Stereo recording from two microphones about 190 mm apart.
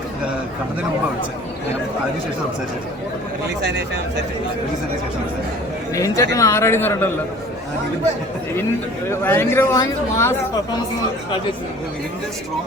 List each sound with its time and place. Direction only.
3.6 s speech: 65° right (ahead or behind)
5.9 s speech: 15° left (ahead or behind)
9.0 s speech: 10° left (ahead or behind)